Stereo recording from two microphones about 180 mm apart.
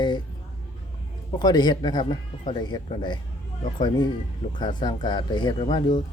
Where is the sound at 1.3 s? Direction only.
25° left (ahead or behind).